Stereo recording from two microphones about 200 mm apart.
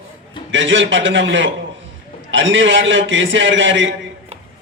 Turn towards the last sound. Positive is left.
turn(degrees=-70)  # may be behind; listen again after turning